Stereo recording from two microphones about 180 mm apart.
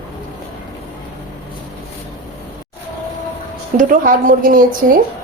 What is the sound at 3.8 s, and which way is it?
A woman's voice, 50° right (ahead or behind).